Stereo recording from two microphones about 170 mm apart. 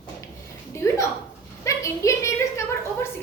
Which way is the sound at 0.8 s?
20° left (ahead or behind).